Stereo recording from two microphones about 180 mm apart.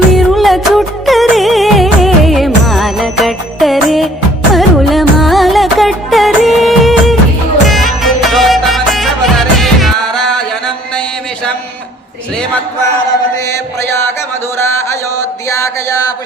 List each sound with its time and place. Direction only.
0.1 s music: centre (ahead or behind)
15.4 s music: 15° left (ahead or behind)